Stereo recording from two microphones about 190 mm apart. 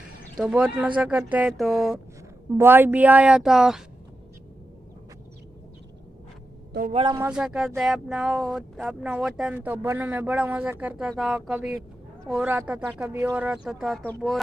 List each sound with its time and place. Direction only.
0.4 s speech: 5° right (ahead or behind)
6.9 s speech: 25° right (ahead or behind)
7.2 s speech: 5° right (ahead or behind)